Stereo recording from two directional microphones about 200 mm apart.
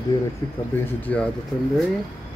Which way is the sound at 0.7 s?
10° left (ahead or behind).